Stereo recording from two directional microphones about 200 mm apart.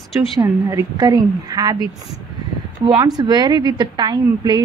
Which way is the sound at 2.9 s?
20° right (ahead or behind).